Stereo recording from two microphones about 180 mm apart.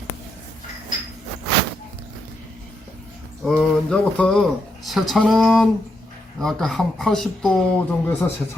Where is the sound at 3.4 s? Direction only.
5° left (ahead or behind).